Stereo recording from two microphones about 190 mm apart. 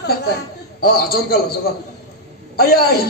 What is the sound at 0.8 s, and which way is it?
Speech, 55° left (ahead or behind).